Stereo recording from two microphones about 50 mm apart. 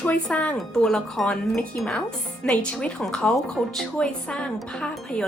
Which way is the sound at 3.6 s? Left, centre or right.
Centre.